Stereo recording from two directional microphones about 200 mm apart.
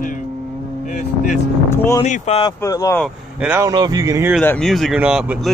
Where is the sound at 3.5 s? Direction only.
15° right (ahead or behind).